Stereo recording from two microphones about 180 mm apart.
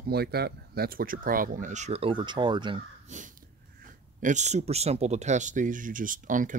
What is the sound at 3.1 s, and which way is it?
Speech, 40° right (ahead or behind).